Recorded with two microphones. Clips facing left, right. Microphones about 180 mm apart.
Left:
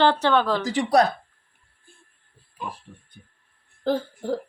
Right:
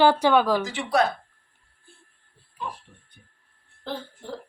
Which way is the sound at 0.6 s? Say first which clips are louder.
Left 4 dB; 40° left (ahead or behind).